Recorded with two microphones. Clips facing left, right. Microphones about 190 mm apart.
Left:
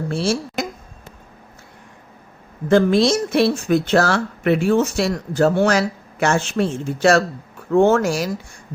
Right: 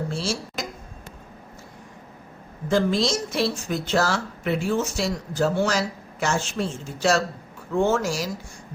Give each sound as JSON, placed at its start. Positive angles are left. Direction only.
{"t": 0.1, "sound": "speech", "side_deg": 60}
{"t": 2.6, "sound": "speech", "side_deg": 60}